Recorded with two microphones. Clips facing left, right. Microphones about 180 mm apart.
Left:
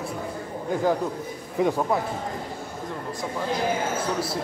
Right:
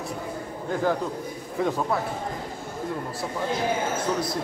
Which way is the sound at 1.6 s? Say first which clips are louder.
Left 3 dB; 15° left (ahead or behind).